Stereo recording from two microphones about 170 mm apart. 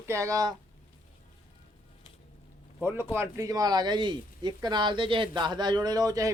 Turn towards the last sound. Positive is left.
turn(degrees=-20)  # may be behind; listen again after turning